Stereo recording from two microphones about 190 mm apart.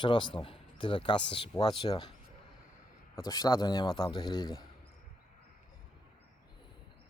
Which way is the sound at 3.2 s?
20° left (ahead or behind).